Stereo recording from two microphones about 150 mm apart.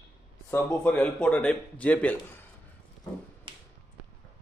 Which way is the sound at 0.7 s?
5° left (ahead or behind).